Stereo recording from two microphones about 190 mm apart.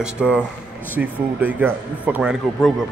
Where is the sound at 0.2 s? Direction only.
5° right (ahead or behind).